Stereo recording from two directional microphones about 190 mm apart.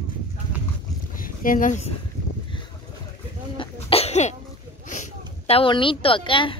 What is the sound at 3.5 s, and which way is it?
Cough, 30° left (ahead or behind).